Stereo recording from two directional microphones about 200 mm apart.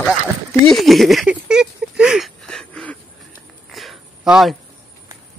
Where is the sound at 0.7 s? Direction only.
Centre (ahead or behind).